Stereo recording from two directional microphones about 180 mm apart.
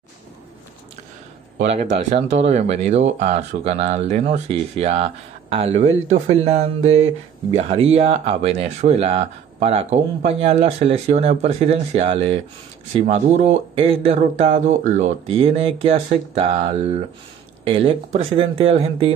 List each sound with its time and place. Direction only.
1.6 s speech: 40° right (ahead or behind)